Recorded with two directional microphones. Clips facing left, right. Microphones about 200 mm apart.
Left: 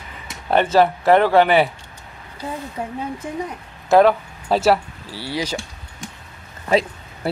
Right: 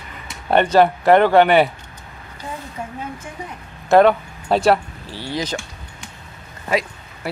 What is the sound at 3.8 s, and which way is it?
Speech, centre (ahead or behind).